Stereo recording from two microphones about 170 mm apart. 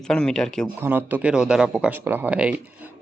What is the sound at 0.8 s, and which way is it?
Speech, 10° right (ahead or behind).